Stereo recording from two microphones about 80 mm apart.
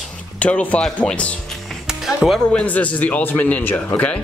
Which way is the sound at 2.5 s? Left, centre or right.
Centre.